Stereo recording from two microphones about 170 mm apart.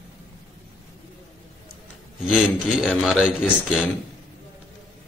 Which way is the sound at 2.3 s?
5° right (ahead or behind).